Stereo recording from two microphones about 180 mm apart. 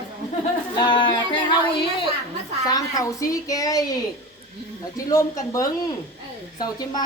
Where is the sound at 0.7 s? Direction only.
25° left (ahead or behind).